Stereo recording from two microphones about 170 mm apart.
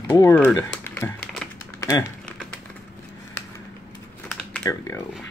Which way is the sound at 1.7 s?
20° left (ahead or behind).